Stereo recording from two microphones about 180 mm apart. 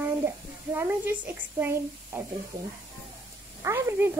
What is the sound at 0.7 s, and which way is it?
Speech, 10° right (ahead or behind).